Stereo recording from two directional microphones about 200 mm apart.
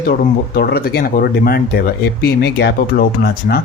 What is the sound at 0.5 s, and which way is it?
Speech, 50° left (ahead or behind).